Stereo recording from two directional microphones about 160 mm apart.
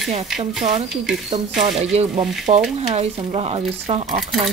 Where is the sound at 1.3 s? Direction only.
40° right (ahead or behind).